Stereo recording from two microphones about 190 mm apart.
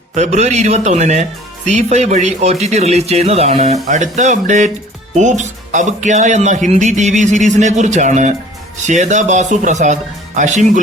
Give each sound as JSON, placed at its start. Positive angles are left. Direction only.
{"t": 0.1, "sound": "speech", "side_deg": -35}